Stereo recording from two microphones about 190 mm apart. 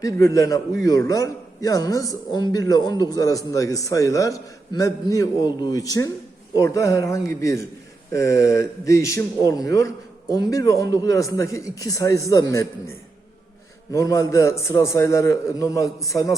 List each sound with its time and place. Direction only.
0.0 s a man's voice: 15° left (ahead or behind)
13.9 s a man's voice: 15° left (ahead or behind)